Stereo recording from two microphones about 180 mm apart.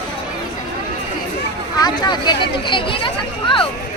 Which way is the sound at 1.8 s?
25° left (ahead or behind).